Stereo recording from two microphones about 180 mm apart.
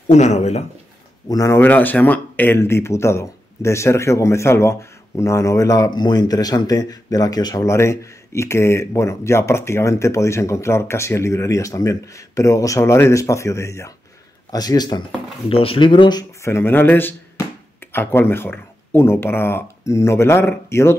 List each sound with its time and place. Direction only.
0.1 s speech: 40° left (ahead or behind)
1.3 s speech: 15° left (ahead or behind)